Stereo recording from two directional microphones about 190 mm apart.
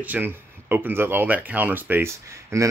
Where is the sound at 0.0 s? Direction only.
10° right (ahead or behind).